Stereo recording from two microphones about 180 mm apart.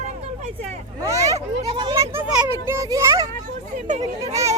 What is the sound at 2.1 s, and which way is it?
A child's voice, 10° right (ahead or behind).